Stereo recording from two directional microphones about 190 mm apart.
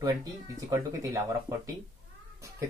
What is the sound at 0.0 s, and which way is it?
Speech, 20° right (ahead or behind).